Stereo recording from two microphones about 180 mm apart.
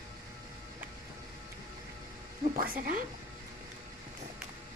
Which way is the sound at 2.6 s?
50° right (ahead or behind).